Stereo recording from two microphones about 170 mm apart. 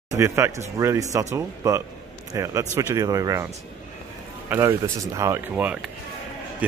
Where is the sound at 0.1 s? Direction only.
15° right (ahead or behind).